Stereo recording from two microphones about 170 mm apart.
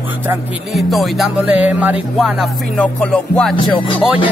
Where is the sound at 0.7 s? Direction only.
Centre (ahead or behind).